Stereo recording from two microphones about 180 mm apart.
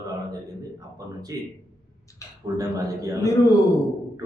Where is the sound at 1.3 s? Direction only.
20° right (ahead or behind).